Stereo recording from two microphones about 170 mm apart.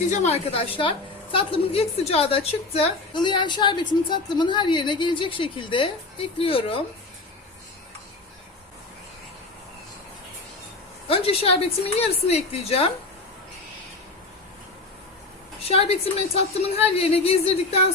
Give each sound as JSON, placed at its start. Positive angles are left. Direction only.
{"t": 0.1, "sound": "a woman's voice", "side_deg": 40}
{"t": 11.1, "sound": "a woman's voice", "side_deg": 35}
{"t": 15.6, "sound": "a woman's voice", "side_deg": 35}